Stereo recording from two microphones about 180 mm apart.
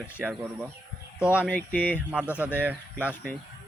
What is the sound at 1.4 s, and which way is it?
Speech, 10° left (ahead or behind).